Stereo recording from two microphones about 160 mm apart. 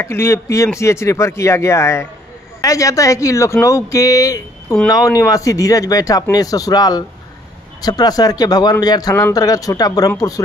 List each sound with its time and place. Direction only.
0.0 s speech: 15° left (ahead or behind)